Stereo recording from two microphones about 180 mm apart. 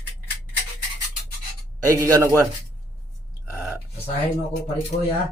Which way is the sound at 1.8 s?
15° right (ahead or behind).